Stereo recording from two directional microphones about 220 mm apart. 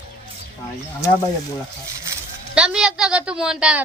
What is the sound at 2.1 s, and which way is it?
Speech, 5° right (ahead or behind).